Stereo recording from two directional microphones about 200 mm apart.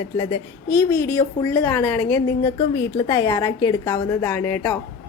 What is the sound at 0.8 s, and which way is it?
A woman's voice, 15° left (ahead or behind).